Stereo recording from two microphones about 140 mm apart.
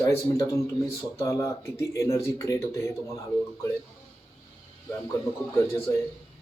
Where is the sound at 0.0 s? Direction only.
25° left (ahead or behind).